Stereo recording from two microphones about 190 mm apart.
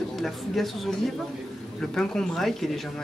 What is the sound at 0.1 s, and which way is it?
Speech, centre (ahead or behind).